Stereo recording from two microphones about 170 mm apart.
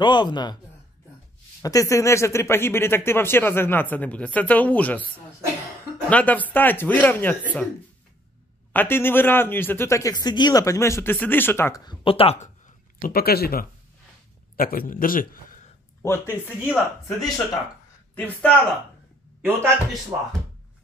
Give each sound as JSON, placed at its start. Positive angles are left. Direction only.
{"t": 0.0, "sound": "speech", "side_deg": 25}
{"t": 1.6, "sound": "speech", "side_deg": 20}
{"t": 6.0, "sound": "speech", "side_deg": 10}
{"t": 8.7, "sound": "speech", "side_deg": 10}
{"t": 11.8, "sound": "a man's voice", "side_deg": 30}
{"t": 16.6, "sound": "speech", "side_deg": 0}
{"t": 18.1, "sound": "a man's voice", "side_deg": 10}
{"t": 19.4, "sound": "a man's voice", "side_deg": -15}